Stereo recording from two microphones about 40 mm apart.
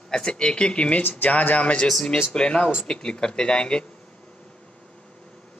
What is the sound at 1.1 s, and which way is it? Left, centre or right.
Speech, left.